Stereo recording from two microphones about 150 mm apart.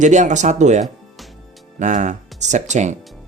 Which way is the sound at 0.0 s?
55° right (ahead or behind).